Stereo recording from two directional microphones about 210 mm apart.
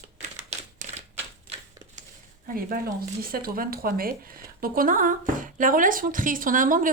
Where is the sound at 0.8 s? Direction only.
35° right (ahead or behind).